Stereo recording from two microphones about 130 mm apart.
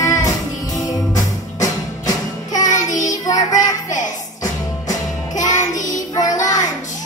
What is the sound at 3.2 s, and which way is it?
Music, 30° left (ahead or behind).